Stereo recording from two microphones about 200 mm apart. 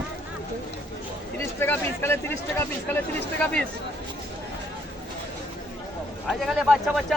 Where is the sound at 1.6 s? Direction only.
10° left (ahead or behind).